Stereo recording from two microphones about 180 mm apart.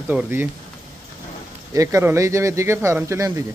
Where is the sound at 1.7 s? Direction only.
15° right (ahead or behind).